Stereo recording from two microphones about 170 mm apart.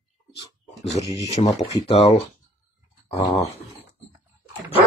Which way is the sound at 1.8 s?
35° left (ahead or behind).